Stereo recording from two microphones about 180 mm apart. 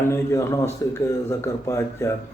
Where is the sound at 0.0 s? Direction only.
15° left (ahead or behind).